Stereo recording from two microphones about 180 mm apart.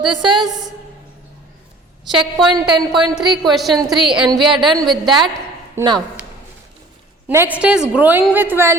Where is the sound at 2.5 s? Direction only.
20° right (ahead or behind).